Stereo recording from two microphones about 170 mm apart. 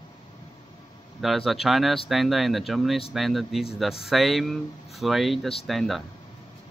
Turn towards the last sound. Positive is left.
turn(degrees=0)  # may be behind; listen again after turning